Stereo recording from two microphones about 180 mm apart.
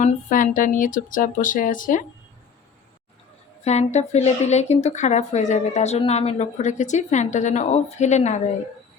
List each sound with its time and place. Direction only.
0.0 s speech: 45° left (ahead or behind)
3.6 s speech: 40° left (ahead or behind)